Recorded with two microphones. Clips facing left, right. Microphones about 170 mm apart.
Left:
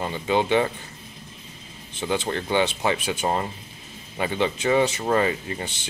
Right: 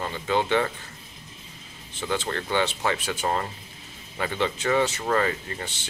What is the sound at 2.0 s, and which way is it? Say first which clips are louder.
Speech: left 3 dB; 15° left (ahead or behind).